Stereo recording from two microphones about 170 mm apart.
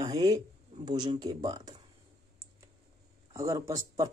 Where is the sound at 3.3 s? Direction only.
20° right (ahead or behind).